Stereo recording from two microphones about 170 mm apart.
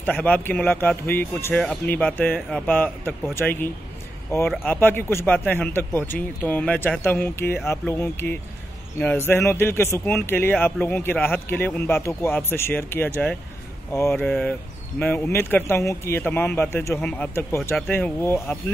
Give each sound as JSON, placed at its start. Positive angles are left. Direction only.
{"t": 0.0, "sound": "speech", "side_deg": 10}